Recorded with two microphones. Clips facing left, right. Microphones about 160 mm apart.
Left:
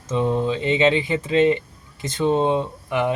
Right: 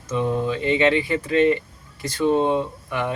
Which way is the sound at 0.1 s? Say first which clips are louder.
Left 2 dB; 25° left (ahead or behind).